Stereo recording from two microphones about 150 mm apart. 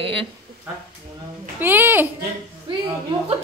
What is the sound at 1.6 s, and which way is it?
Speech, 15° right (ahead or behind).